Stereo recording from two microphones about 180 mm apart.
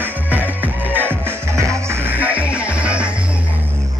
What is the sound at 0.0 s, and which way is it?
Music, 10° right (ahead or behind).